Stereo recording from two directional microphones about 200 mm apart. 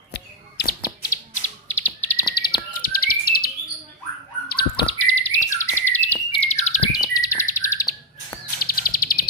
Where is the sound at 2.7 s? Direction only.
45° left (ahead or behind).